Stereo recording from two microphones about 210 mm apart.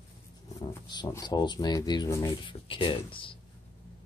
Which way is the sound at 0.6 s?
20° left (ahead or behind).